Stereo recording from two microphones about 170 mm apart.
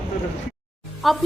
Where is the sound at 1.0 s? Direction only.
Centre (ahead or behind).